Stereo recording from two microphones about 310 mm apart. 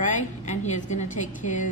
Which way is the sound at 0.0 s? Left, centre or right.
Left.